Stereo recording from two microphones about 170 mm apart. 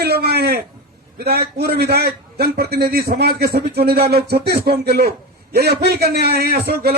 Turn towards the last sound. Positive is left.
turn(degrees=-65)  # may be behind; listen again after turning